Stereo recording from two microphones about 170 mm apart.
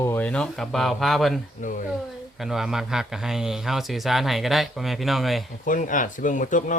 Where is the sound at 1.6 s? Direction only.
50° left (ahead or behind).